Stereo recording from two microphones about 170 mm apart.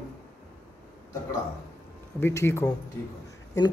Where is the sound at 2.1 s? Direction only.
15° left (ahead or behind).